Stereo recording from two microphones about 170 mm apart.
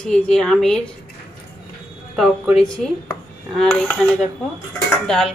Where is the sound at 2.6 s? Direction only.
5° left (ahead or behind).